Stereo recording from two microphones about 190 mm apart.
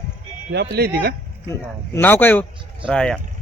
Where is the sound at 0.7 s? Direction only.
55° right (ahead or behind).